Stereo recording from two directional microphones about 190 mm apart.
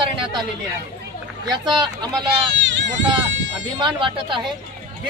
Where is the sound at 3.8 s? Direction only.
25° right (ahead or behind).